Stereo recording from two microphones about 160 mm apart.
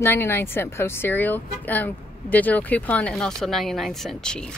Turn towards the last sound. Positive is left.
turn(degrees=5)  # may be behind; listen again after turning